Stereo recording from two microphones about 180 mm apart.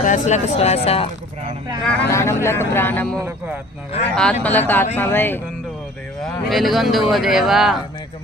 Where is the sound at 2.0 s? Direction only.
15° left (ahead or behind).